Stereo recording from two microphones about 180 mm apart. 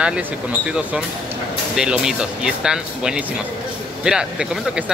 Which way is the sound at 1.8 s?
5° right (ahead or behind).